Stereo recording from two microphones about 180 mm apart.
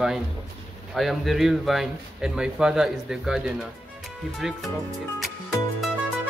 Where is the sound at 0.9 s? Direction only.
Centre (ahead or behind).